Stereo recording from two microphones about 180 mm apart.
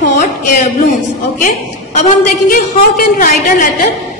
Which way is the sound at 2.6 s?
50° left (ahead or behind).